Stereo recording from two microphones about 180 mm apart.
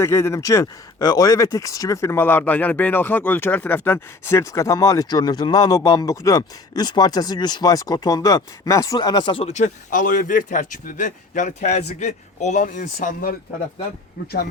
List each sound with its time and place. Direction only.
0.0 s speech: 15° left (ahead or behind); by 13.3 s 50° left (ahead or behind)